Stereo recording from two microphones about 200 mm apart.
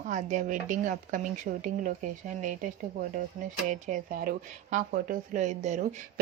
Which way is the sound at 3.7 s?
40° right (ahead or behind).